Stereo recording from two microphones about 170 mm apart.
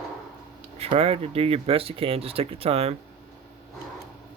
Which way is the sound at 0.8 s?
35° right (ahead or behind).